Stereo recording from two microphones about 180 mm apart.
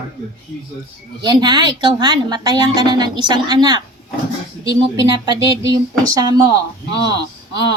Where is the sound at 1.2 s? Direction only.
25° right (ahead or behind).